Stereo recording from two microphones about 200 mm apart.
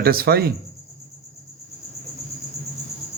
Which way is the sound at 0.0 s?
50° right (ahead or behind).